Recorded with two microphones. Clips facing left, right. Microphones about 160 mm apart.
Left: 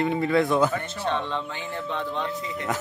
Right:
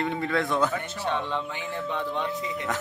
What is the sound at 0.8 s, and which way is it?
Speech, 15° right (ahead or behind).